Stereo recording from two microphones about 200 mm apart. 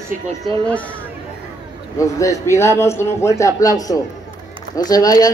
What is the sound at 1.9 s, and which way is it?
A man's voice, 15° left (ahead or behind).